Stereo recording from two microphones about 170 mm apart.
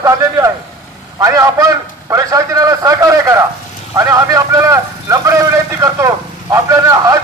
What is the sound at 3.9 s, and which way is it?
Vehicle, 20° right (ahead or behind).